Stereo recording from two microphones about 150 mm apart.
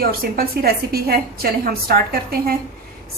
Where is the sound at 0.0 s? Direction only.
80° right.